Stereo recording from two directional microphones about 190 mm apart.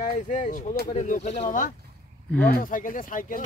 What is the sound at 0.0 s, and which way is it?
A man's voice, 40° left (ahead or behind).